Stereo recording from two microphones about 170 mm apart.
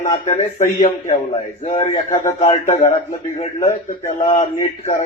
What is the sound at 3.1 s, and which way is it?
A man's voice, 45° left (ahead or behind).